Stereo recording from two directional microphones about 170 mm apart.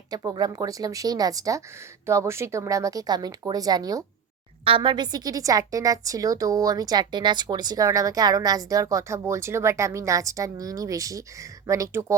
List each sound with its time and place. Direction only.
0.1 s a woman's voice: 20° right (ahead or behind)